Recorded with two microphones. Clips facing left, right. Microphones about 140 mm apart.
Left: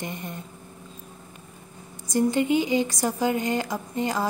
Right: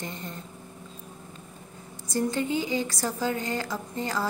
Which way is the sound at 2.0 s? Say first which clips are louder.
Left 5 dB; 15° left (ahead or behind).